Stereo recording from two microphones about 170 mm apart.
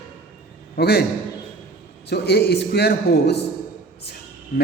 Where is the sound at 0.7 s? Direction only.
70° left (ahead or behind).